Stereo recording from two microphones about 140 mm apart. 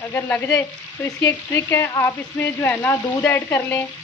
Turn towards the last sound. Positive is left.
turn(degrees=15)  # may be behind; listen again after turning